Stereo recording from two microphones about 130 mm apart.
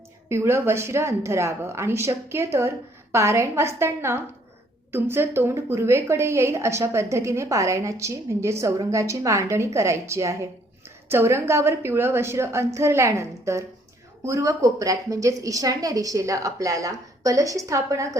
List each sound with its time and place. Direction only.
0.3 s a woman's voice: 20° right (ahead or behind)